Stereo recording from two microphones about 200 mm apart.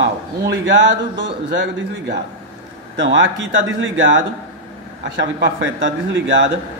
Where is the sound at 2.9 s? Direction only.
65° right (ahead or behind).